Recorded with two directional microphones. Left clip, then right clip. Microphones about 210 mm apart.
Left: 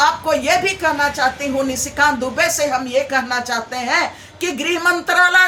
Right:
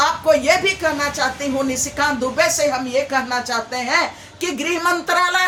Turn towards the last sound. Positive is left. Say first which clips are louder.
# left 4 dB
turn(degrees=20)  # may be behind; listen again after turning